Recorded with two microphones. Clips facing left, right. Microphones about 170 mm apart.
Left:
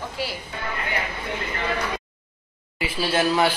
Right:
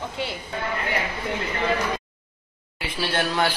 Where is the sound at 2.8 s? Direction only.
5° left (ahead or behind).